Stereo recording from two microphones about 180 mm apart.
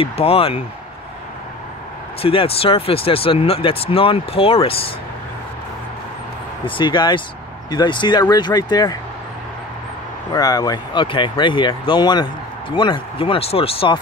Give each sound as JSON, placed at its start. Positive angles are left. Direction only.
{"t": 0.0, "sound": "speech", "side_deg": 35}
{"t": 2.2, "sound": "speech", "side_deg": 30}
{"t": 6.6, "sound": "speech", "side_deg": 25}
{"t": 10.3, "sound": "speech", "side_deg": 20}